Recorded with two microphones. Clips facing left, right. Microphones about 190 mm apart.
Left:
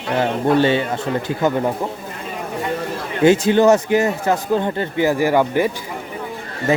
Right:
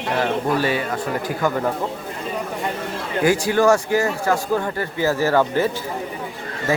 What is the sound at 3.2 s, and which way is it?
Speech, 25° left (ahead or behind).